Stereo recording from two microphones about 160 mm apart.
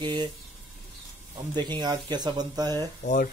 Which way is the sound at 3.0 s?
55° left (ahead or behind).